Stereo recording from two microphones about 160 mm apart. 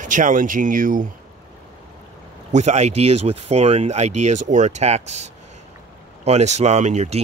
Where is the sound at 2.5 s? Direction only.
45° right (ahead or behind).